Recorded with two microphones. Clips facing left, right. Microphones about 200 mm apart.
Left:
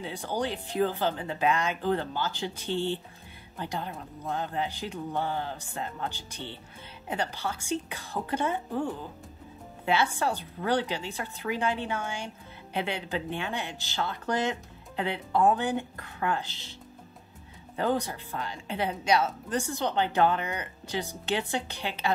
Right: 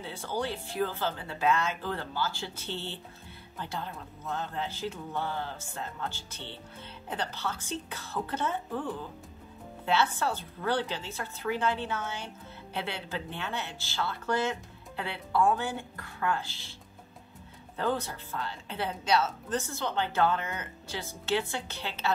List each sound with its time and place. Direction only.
0.0 s a woman's voice: 15° left (ahead or behind)
9.8 s a woman's voice: 15° left (ahead or behind)
17.7 s a woman's voice: 15° left (ahead or behind)